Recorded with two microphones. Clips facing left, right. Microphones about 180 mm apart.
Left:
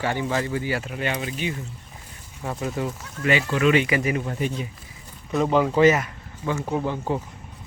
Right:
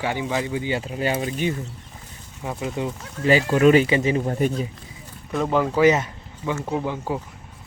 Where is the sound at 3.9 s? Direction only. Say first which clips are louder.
Right 3 dB; 25° right (ahead or behind).